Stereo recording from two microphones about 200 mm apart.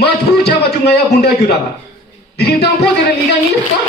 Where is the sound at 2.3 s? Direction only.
55° left (ahead or behind).